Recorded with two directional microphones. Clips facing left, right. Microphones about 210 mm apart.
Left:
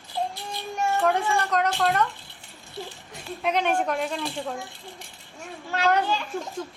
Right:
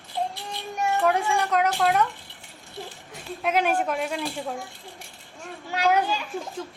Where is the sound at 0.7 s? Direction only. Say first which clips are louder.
Even; 15° right (ahead or behind).